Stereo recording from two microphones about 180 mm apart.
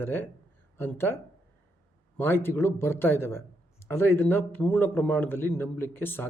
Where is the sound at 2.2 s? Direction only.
10° left (ahead or behind).